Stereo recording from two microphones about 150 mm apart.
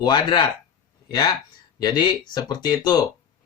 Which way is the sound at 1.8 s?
30° left (ahead or behind).